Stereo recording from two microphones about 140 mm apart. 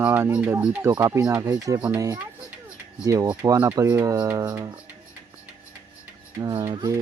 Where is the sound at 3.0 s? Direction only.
25° right (ahead or behind).